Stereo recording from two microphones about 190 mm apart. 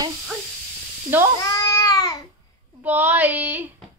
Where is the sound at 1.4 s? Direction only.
15° left (ahead or behind).